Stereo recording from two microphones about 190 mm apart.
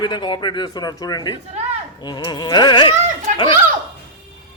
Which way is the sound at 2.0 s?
20° left (ahead or behind).